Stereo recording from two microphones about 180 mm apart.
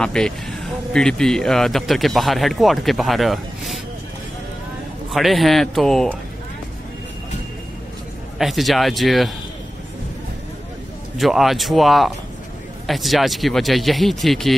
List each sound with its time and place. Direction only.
0.0 s speech: 5° left (ahead or behind)
5.1 s speech: centre (ahead or behind)
8.4 s speech: centre (ahead or behind)
11.1 s speech: centre (ahead or behind)